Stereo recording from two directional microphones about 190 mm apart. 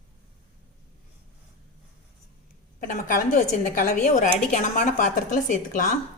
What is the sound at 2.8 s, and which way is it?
A woman's voice, 45° left (ahead or behind).